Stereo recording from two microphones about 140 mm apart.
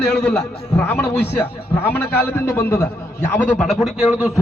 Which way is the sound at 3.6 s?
Centre (ahead or behind).